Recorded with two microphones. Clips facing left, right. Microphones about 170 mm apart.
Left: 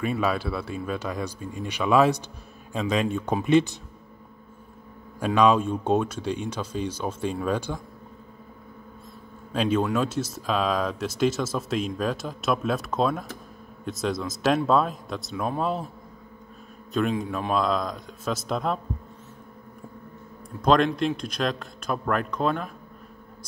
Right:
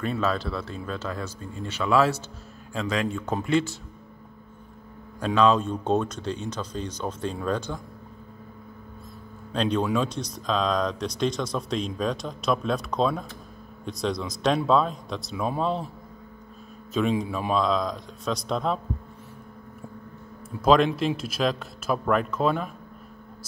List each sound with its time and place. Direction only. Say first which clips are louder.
0.0 s speech: left 1 dB; 10° left (ahead or behind)
5.2 s speech: left 1 dB; 10° left (ahead or behind)
9.5 s speech: left 1 dB; 5° left (ahead or behind)
16.9 s speech: right 1 dB; centre (ahead or behind)
20.6 s speech: right 1 dB; centre (ahead or behind)